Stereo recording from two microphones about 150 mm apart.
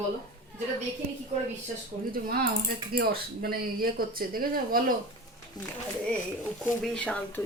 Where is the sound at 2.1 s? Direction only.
80° right.